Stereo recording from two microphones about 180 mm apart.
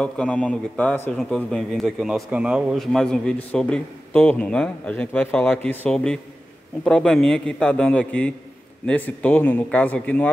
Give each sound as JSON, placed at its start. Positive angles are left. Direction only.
{"t": 0.0, "sound": "a man's voice", "side_deg": 5}